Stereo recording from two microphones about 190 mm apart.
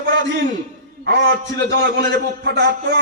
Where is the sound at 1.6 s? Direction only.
60° right (ahead or behind).